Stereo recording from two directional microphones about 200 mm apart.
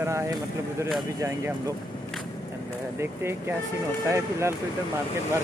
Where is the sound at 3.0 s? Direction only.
10° right (ahead or behind).